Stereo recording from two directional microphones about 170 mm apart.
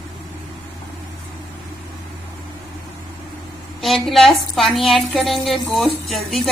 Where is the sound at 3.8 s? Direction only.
Centre (ahead or behind).